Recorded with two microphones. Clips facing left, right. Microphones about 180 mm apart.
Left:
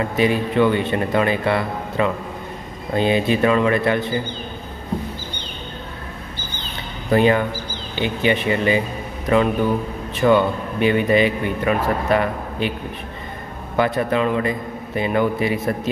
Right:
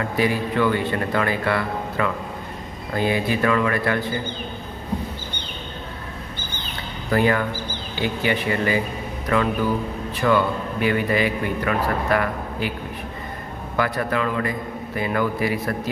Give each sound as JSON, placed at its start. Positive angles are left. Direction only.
{"t": 0.0, "sound": "a man's voice", "side_deg": 20}
{"t": 7.1, "sound": "a man's voice", "side_deg": 20}
{"t": 13.7, "sound": "a man's voice", "side_deg": 25}